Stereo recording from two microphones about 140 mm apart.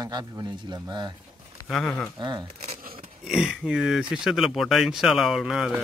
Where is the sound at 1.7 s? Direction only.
5° left (ahead or behind).